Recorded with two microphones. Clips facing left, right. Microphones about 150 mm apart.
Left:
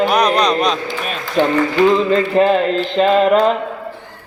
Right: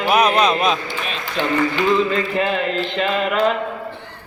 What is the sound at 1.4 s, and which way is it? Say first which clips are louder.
Speech: left 8 dB; 50° left (ahead or behind).